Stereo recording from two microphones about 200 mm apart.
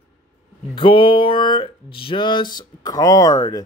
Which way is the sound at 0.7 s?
25° left (ahead or behind).